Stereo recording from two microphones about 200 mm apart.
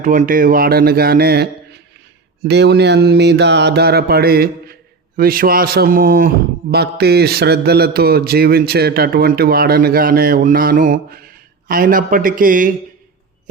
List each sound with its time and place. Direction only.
0.0 s mantra: 40° right (ahead or behind)